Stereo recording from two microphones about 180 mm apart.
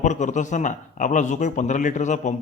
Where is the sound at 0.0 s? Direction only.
40° left (ahead or behind).